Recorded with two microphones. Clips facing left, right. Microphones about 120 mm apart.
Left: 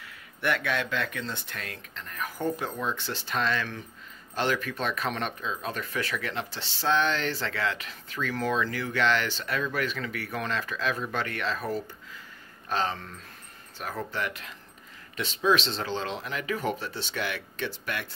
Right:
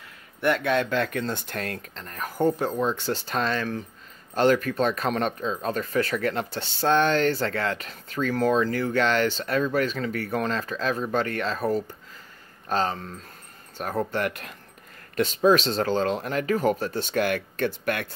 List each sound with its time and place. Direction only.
0.4 s speech: 30° right (ahead or behind)
0.9 s speech: 45° right (ahead or behind)
14.1 s speech: 50° right (ahead or behind)